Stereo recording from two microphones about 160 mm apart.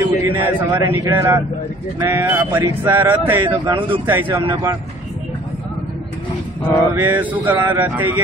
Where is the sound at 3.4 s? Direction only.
30° right (ahead or behind).